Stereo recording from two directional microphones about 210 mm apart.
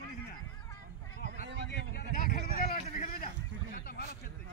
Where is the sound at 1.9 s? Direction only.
45° left (ahead or behind).